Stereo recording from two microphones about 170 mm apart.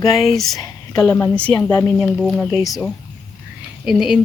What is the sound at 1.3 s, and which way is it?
Speech, 5° left (ahead or behind).